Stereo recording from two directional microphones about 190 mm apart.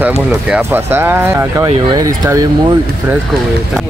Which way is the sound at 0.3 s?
10° right (ahead or behind).